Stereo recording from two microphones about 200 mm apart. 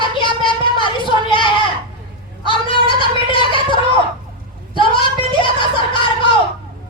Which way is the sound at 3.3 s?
25° left (ahead or behind).